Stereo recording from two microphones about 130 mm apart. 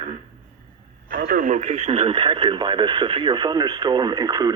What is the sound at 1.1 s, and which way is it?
Speech, 90° right.